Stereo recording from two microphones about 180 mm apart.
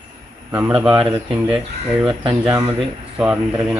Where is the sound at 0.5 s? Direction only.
10° right (ahead or behind).